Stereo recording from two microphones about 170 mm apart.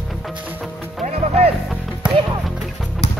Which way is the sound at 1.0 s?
40° right (ahead or behind).